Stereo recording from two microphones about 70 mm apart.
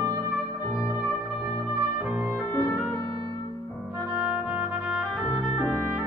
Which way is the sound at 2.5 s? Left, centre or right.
Left.